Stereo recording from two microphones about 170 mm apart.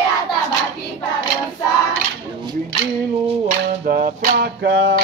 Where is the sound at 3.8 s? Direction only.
60° right (ahead or behind).